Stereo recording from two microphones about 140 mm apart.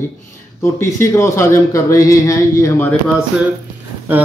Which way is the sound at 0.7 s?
20° left (ahead or behind).